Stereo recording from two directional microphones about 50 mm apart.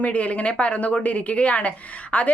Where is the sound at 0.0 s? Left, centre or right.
Left.